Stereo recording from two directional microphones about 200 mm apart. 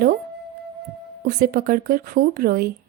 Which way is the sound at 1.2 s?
50° right (ahead or behind).